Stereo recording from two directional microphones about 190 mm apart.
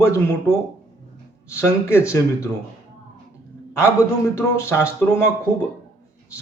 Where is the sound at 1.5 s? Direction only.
15° left (ahead or behind).